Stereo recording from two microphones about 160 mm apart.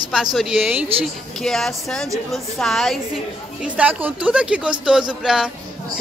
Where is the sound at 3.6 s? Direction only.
10° right (ahead or behind).